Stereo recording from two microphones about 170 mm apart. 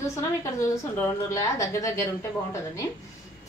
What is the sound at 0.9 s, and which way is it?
A woman's voice, 15° left (ahead or behind).